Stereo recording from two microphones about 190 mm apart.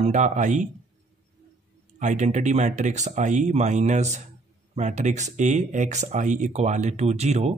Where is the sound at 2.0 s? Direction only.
40° right (ahead or behind).